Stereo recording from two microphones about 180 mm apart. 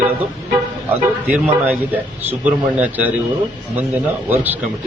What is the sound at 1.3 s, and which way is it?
A man's voice, 10° right (ahead or behind).